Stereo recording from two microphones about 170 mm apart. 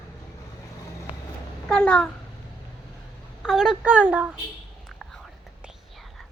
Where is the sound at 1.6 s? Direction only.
5° left (ahead or behind).